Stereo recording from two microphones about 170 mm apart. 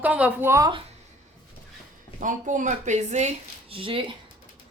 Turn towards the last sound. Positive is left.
turn(degrees=-30)  # may be behind; listen again after turning